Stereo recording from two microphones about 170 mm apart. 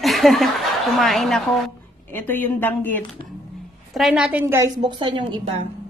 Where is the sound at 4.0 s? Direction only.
Centre (ahead or behind).